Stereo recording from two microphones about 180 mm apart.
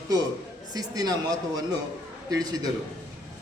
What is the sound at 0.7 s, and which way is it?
A man's voice, 20° right (ahead or behind).